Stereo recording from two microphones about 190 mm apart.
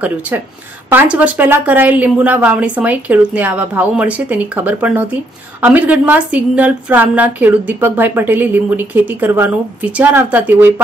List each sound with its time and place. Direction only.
0.0 s a woman's voice: 10° right (ahead or behind)